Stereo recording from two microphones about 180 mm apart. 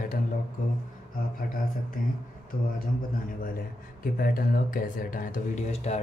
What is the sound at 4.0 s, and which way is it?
Speech, 50° left (ahead or behind).